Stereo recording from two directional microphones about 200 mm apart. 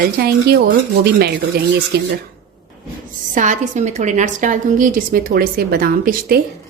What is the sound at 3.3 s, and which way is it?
A woman's voice, 40° right (ahead or behind).